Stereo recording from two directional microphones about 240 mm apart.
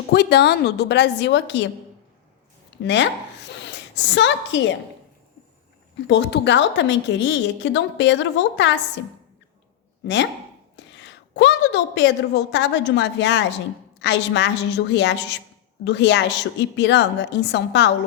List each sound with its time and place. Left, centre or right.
0.1 s a woman's voice: left
2.8 s a woman's voice: left
6.1 s a woman's voice: left
10.0 s a woman's voice: left